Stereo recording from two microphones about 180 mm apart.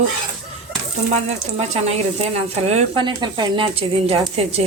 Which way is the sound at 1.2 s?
35° right (ahead or behind).